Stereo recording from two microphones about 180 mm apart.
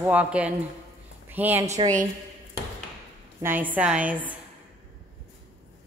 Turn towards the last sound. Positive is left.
turn(degrees=-10)  # may be behind; listen again after turning